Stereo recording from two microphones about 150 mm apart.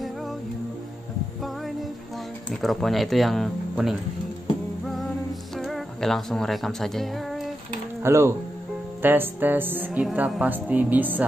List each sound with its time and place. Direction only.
2.5 s speech: centre (ahead or behind)
5.6 s speech: centre (ahead or behind)
8.0 s speech: 20° right (ahead or behind)